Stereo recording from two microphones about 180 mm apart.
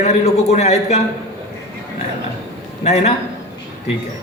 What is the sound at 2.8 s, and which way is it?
Speech, 40° left (ahead or behind).